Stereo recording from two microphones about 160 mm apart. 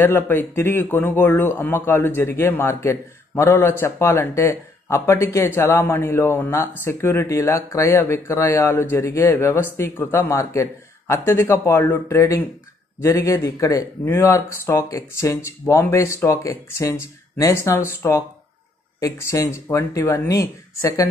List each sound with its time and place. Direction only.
0.0 s a man's voice: 15° left (ahead or behind)